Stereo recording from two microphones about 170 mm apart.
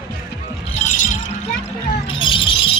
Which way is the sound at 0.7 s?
45° left (ahead or behind).